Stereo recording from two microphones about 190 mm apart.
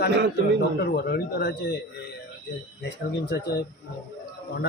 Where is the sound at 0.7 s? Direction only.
55° left (ahead or behind).